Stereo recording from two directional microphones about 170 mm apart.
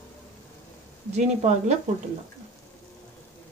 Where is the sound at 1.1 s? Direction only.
40° right (ahead or behind).